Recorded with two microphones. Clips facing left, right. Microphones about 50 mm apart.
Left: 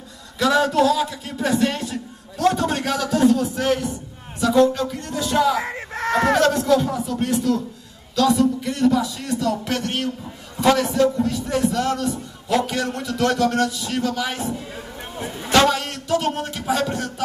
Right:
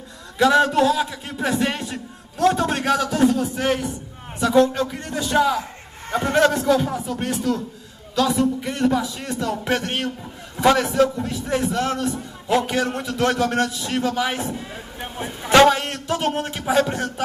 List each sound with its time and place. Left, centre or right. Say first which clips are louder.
0.4 s a man's voice: right 1 dB; centre
5.6 s a sound: left 7 dB; left
6.4 s a man's voice: even; centre
7.3 s a man's voice: left 3 dB; centre
8.4 s a man's voice: left 1 dB; centre
15.4 s a man's voice: right 3 dB; right